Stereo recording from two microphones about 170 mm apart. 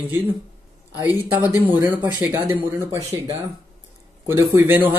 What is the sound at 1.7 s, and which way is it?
Speech, 10° right (ahead or behind).